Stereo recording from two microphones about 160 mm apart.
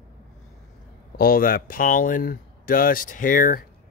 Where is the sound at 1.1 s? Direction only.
70° left (ahead or behind).